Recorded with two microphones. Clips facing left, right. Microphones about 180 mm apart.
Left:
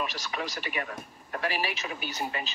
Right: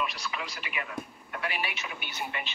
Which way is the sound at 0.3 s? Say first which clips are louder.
Left 4 dB; 40° left (ahead or behind).